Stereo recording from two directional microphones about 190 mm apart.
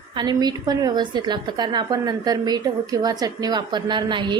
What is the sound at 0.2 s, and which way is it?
A woman's voice, 20° right (ahead or behind).